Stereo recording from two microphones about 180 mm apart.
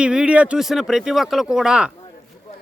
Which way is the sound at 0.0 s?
5° right (ahead or behind).